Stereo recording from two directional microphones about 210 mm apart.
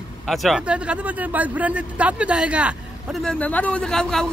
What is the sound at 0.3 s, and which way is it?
A man's voice, centre (ahead or behind).